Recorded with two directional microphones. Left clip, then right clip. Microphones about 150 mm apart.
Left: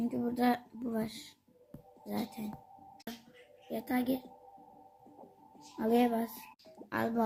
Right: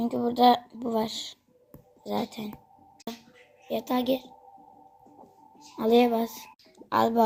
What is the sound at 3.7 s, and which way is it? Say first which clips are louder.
Speech: right 8 dB; 30° right (ahead or behind).